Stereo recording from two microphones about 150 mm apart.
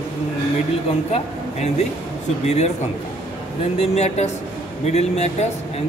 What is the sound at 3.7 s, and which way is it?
A man's voice, 45° left (ahead or behind).